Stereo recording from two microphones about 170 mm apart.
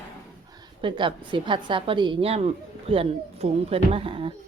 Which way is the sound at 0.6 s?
25° right (ahead or behind).